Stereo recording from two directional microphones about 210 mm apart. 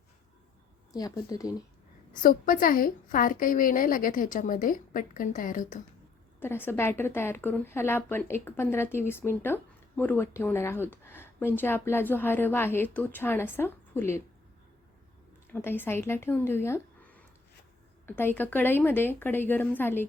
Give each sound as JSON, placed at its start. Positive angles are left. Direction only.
{"t": 0.9, "sound": "a woman's voice", "side_deg": 15}
{"t": 2.2, "sound": "a woman's voice", "side_deg": 40}
{"t": 6.4, "sound": "a woman's voice", "side_deg": 10}
{"t": 15.5, "sound": "a woman's voice", "side_deg": 10}